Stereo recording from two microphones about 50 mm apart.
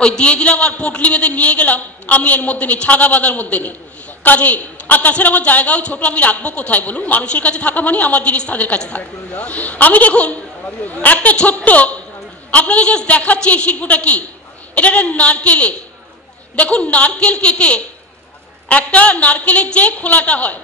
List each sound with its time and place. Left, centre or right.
0.0 s a man's voice: centre